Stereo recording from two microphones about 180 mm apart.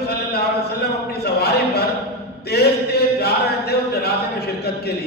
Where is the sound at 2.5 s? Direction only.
60° left (ahead or behind).